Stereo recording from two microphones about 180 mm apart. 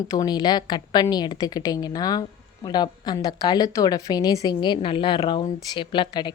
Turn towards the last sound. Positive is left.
turn(degrees=25)  # may be behind; listen again after turning